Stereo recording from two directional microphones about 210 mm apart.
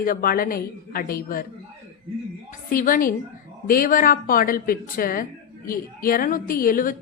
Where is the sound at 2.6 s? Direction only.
40° left (ahead or behind).